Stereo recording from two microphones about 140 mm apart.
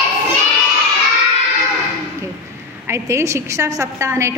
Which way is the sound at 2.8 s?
20° right (ahead or behind).